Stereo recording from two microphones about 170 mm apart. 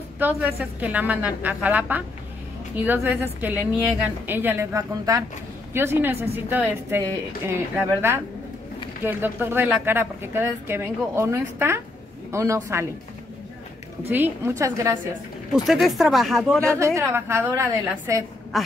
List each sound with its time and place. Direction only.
0.2 s a woman's voice: 10° right (ahead or behind)
9.0 s a woman's voice: 10° right (ahead or behind)
14.0 s a woman's voice: 10° right (ahead or behind)
15.5 s speech: centre (ahead or behind)
16.6 s a woman's voice: 15° right (ahead or behind)